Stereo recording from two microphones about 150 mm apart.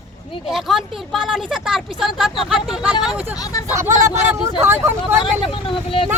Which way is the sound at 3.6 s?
15° right (ahead or behind).